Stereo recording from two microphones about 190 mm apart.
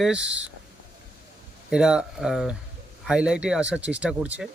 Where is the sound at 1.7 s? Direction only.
5° right (ahead or behind).